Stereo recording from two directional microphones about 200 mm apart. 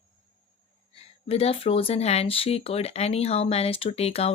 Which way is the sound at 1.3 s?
30° left (ahead or behind).